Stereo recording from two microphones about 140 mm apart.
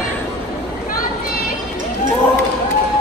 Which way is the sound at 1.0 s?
90° left.